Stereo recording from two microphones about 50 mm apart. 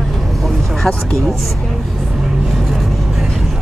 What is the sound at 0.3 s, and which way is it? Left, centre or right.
Vehicle, centre.